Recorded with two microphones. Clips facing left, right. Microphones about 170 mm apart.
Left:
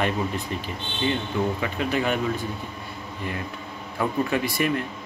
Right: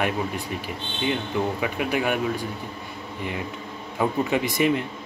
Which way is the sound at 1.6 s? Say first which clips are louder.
Right 1 dB; 10° right (ahead or behind).